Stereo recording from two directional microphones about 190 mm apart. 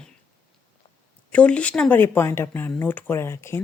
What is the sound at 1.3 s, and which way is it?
Speech, 5° left (ahead or behind).